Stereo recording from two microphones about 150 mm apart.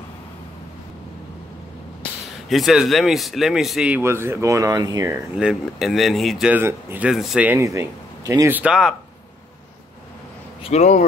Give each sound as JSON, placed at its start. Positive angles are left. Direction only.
{"t": 2.5, "sound": "speech", "side_deg": 0}
{"t": 5.4, "sound": "speech", "side_deg": -5}
{"t": 10.6, "sound": "speech", "side_deg": 45}